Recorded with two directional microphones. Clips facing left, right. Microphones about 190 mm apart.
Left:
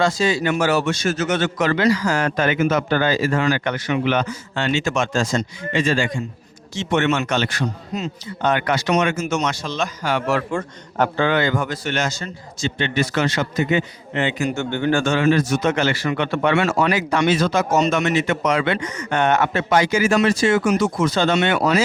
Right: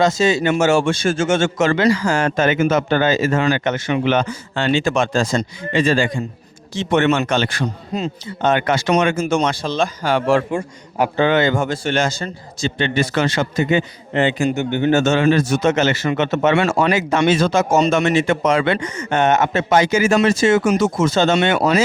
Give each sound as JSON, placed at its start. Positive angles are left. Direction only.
{"t": 0.0, "sound": "a man's voice", "side_deg": -25}
{"t": 10.5, "sound": "a man's voice", "side_deg": -10}
{"t": 11.3, "sound": "a man's voice", "side_deg": -25}
{"t": 14.5, "sound": "a man's voice", "side_deg": -15}